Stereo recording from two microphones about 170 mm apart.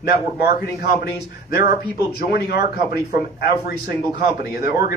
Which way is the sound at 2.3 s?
65° left (ahead or behind).